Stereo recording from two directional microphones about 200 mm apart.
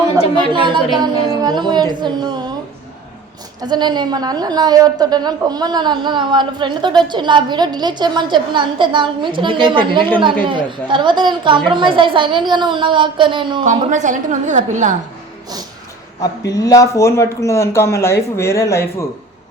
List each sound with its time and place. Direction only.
0.5 s a woman's voice: 25° right (ahead or behind)
3.6 s a woman's voice: 20° right (ahead or behind)
13.7 s a woman's voice: 40° right (ahead or behind)
16.2 s speech: 20° left (ahead or behind)